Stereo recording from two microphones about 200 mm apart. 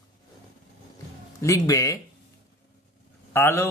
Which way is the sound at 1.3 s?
15° left (ahead or behind).